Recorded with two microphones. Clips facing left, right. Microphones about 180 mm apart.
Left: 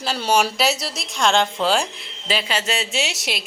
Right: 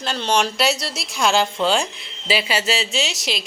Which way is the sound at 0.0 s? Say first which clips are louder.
Left 1 dB; 5° left (ahead or behind).